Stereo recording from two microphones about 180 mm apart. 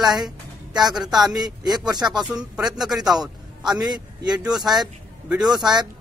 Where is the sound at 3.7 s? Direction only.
25° right (ahead or behind).